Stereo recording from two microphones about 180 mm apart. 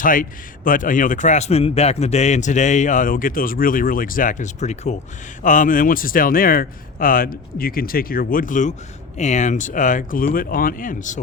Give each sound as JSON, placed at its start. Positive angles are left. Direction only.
{"t": 0.0, "sound": "a man's voice", "side_deg": 50}